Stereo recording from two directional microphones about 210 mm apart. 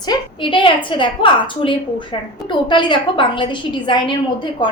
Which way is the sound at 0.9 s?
25° left (ahead or behind).